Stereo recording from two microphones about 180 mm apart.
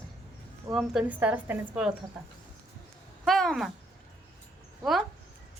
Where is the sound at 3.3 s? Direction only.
Centre (ahead or behind).